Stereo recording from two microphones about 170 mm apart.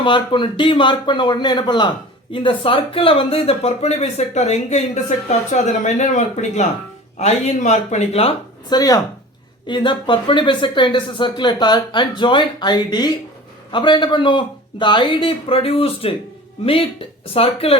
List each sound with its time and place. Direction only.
0.0 s speech: 30° left (ahead or behind)
8.7 s speech: 20° left (ahead or behind)